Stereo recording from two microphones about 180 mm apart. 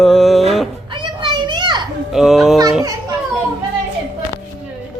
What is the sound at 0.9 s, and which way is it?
Children playing, 25° right (ahead or behind).